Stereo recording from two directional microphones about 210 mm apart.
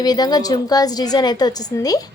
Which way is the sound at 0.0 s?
20° left (ahead or behind).